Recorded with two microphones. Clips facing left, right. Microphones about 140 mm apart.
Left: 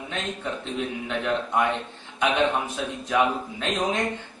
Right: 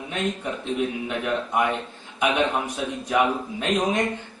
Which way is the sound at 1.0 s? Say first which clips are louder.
Even; 15° right (ahead or behind).